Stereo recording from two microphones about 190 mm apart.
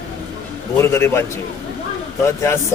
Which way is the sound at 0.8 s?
15° left (ahead or behind).